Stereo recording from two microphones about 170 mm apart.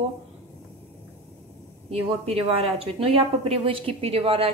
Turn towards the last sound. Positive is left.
turn(degrees=-35)  # may be behind; listen again after turning